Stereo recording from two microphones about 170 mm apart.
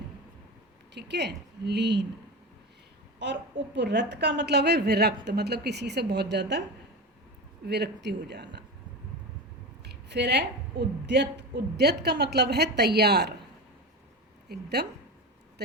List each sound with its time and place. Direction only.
0.9 s a woman's voice: 85° right
3.2 s a woman's voice: 90° right
7.7 s a woman's voice: 80° right
9.8 s a woman's voice: 80° right
14.4 s a woman's voice: 70° right (ahead or behind)